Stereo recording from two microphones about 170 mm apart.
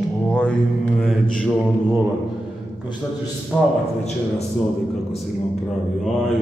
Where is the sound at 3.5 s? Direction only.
20° left (ahead or behind).